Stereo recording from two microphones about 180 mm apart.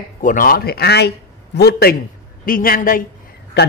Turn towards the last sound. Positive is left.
turn(degrees=70)  # may be behind; listen again after turning